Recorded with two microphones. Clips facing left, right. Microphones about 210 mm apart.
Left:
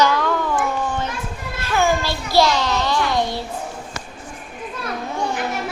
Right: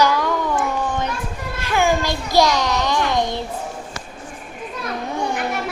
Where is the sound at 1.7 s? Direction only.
15° right (ahead or behind).